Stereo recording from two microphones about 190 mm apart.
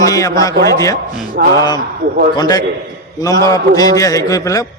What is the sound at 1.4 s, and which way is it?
Speech, 55° right (ahead or behind).